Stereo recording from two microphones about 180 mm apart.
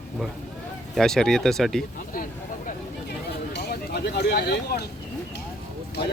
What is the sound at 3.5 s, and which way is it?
Speech, 60° left (ahead or behind).